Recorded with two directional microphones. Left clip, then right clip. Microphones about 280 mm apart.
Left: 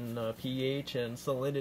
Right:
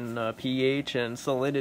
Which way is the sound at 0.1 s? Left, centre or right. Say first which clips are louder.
Right 6 dB; centre.